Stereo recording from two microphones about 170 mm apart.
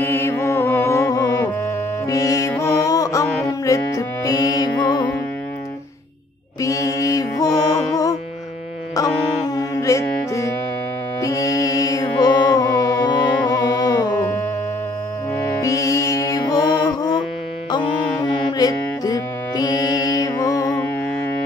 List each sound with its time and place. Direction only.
0.0 s music: 15° left (ahead or behind)
6.6 s mantra: 20° left (ahead or behind)
9.6 s music: 20° left (ahead or behind)
15.6 s music: 20° left (ahead or behind)